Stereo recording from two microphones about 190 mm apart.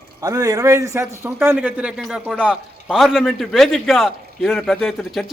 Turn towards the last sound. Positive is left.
turn(degrees=0)  # may be behind; listen again after turning